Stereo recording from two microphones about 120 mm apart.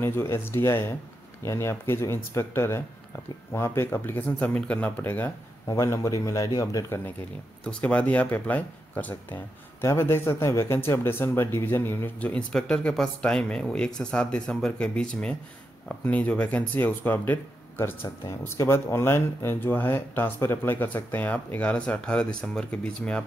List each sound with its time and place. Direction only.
0.0 s speech: 20° left (ahead or behind)
5.7 s speech: 25° left (ahead or behind)
7.6 s speech: 10° left (ahead or behind)